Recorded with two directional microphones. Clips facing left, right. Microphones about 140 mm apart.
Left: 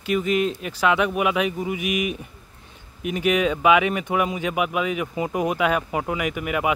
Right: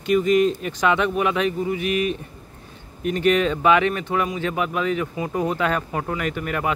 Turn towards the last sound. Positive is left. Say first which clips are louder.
# left 1 dB
turn(degrees=10)  # may be behind; listen again after turning